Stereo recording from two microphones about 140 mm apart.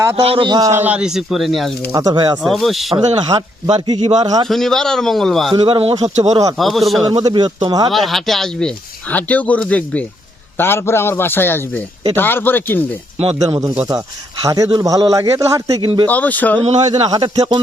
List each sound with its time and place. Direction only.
0.2 s a man's voice: 40° right (ahead or behind); by 0.8 s 25° right (ahead or behind)
0.8 s a man's voice: 10° right (ahead or behind)
1.9 s a man's voice: 25° right (ahead or behind)
2.4 s a man's voice: centre (ahead or behind)
3.3 s a man's voice: 25° right (ahead or behind)
4.4 s a man's voice: centre (ahead or behind)
5.5 s a man's voice: 40° right (ahead or behind)
6.6 s a man's voice: centre (ahead or behind)
7.1 s a man's voice: 30° right (ahead or behind)
7.9 s speech: centre (ahead or behind)
13.6 s a man's voice: 25° right (ahead or behind)
16.0 s speech: 10° left (ahead or behind)
16.6 s speech: 50° right (ahead or behind)
17.1 s a man's voice: 30° right (ahead or behind)